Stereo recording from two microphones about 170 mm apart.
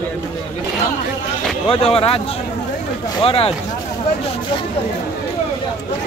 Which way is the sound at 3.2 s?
35° left (ahead or behind).